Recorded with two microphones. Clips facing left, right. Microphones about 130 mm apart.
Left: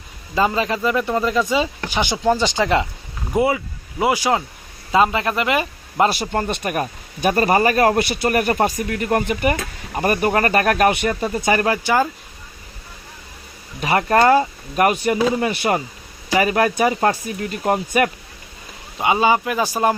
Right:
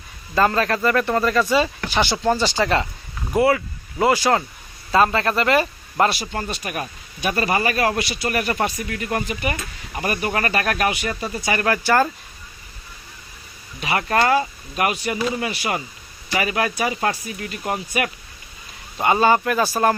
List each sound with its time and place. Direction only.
0.3 s speech: 15° left (ahead or behind)
6.1 s speech: 50° left (ahead or behind)
11.1 s speech: 35° left (ahead or behind)
11.3 s speech: 45° left (ahead or behind)
11.6 s speech: 20° left (ahead or behind)
13.7 s speech: 40° left (ahead or behind)
18.9 s speech: 10° left (ahead or behind)